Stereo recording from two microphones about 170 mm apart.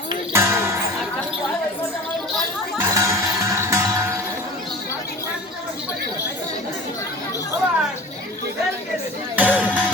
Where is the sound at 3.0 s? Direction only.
15° right (ahead or behind).